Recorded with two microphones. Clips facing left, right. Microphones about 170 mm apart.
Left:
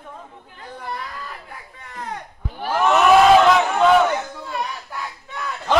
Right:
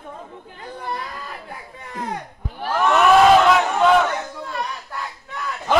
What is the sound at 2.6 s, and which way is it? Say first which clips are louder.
Crowd: even; 5° left (ahead or behind).